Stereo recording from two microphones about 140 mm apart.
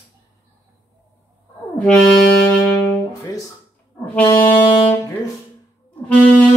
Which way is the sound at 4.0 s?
10° left (ahead or behind).